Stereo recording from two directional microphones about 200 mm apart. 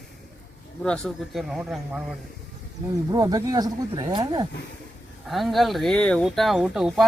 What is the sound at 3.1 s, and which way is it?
Speech, 20° right (ahead or behind).